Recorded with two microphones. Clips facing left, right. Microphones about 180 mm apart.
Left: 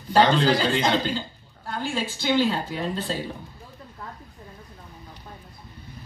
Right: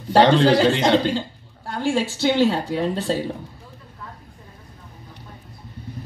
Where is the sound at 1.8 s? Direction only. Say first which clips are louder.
Right 8 dB; 80° right.